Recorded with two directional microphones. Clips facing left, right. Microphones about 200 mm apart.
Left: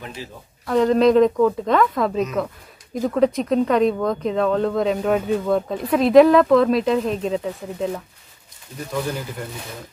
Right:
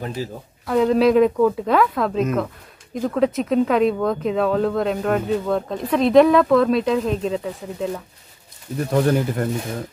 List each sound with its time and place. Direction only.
0.0 s speech: 40° right (ahead or behind)
0.7 s speech: 5° right (ahead or behind)
8.9 s speech: 60° right (ahead or behind)